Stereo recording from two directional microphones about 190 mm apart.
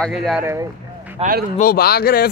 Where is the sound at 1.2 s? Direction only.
50° right (ahead or behind).